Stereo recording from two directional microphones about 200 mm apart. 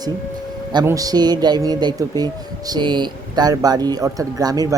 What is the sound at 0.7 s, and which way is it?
A man's voice, 20° right (ahead or behind).